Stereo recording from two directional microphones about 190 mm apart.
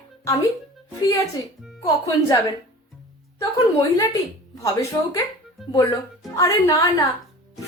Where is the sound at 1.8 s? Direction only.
15° left (ahead or behind).